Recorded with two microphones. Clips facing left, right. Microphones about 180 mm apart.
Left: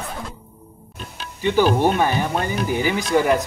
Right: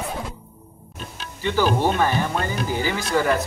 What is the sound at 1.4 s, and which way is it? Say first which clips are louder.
Speech: left 3 dB; 15° left (ahead or behind).